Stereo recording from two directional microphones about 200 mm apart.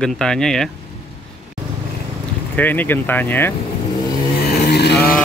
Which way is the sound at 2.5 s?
10° left (ahead or behind).